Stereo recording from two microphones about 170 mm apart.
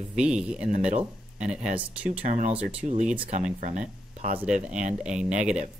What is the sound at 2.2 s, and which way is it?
Speech, 45° right (ahead or behind).